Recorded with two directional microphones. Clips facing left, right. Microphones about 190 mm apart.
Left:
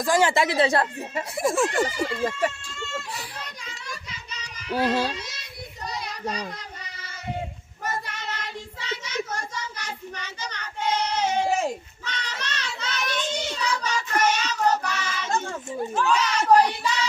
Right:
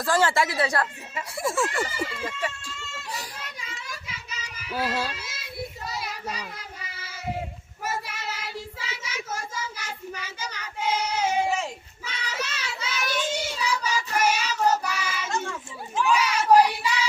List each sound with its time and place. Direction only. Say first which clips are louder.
0.0 s speech: left 2 dB; 15° left (ahead or behind)
2.0 s speech: left 7 dB; 45° left (ahead or behind)
3.4 s children playing: even; centre (ahead or behind)
5.9 s child singing: left 2 dB; 5° right (ahead or behind)
15.3 s children playing: left 4 dB; 40° left (ahead or behind)
16.0 s a sound: even; 10° right (ahead or behind)